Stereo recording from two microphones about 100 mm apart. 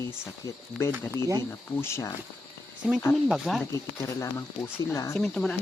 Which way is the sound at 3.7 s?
30° left (ahead or behind).